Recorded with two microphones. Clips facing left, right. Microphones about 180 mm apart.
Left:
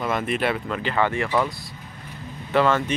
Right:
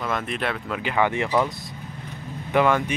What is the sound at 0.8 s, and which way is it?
Speech, 10° right (ahead or behind).